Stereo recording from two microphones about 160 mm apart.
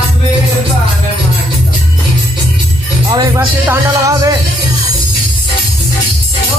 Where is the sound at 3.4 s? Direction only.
15° right (ahead or behind).